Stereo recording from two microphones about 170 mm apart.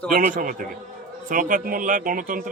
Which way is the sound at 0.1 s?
50° right (ahead or behind).